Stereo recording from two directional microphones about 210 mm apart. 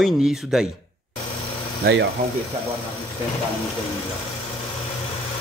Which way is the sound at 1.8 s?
45° right (ahead or behind).